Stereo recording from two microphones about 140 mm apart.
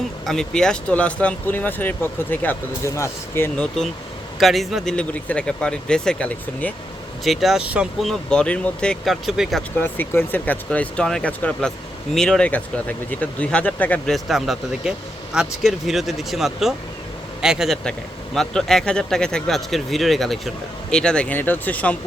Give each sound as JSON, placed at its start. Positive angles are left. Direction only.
{"t": 0.3, "sound": "speech", "side_deg": 5}
{"t": 4.4, "sound": "speech", "side_deg": 0}
{"t": 7.3, "sound": "speech", "side_deg": 0}
{"t": 9.7, "sound": "speech", "side_deg": 15}
{"t": 14.3, "sound": "speech", "side_deg": 0}